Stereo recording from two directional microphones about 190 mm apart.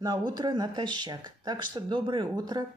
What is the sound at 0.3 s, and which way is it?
Speech, 20° right (ahead or behind).